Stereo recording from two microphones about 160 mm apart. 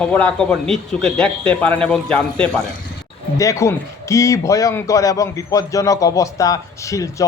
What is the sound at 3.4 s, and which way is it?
A man's voice, 20° left (ahead or behind).